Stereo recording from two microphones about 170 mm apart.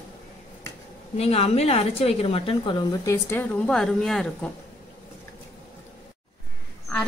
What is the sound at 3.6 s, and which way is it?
Speech, 5° left (ahead or behind).